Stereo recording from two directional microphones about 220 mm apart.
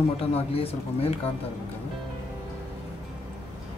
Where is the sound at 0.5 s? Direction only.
25° left (ahead or behind).